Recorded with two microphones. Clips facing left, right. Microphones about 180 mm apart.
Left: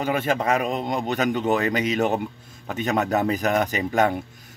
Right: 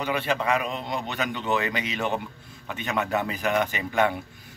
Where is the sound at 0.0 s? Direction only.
45° left (ahead or behind).